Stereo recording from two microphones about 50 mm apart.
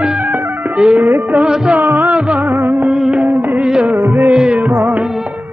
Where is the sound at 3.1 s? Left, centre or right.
Right.